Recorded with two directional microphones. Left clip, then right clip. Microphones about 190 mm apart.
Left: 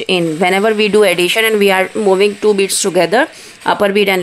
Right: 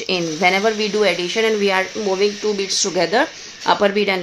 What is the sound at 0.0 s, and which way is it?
Speech, 45° left (ahead or behind).